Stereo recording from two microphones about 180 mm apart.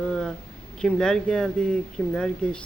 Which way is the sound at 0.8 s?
5° left (ahead or behind).